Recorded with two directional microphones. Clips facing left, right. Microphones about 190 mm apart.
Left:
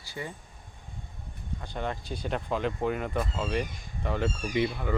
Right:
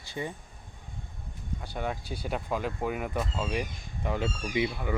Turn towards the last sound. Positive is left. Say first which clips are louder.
# left 1 dB
turn(degrees=-10)  # may be behind; listen again after turning